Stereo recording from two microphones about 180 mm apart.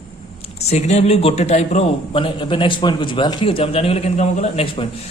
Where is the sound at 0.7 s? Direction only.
40° left (ahead or behind).